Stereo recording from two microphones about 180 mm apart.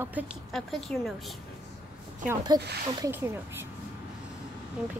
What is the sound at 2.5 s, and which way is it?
Speech, 20° right (ahead or behind).